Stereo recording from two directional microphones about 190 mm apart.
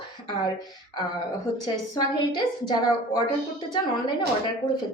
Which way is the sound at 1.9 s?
25° left (ahead or behind).